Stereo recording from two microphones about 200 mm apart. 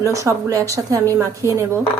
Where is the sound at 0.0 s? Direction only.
15° right (ahead or behind).